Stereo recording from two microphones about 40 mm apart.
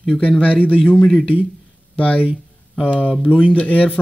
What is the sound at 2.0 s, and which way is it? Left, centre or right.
Speech, left.